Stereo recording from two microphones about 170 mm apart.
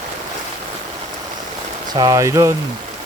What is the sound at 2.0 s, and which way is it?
Speech, 20° right (ahead or behind).